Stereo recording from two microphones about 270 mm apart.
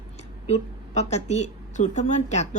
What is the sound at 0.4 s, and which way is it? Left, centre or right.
A woman's voice, left.